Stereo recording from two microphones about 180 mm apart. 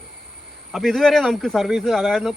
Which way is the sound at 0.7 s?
Centre (ahead or behind).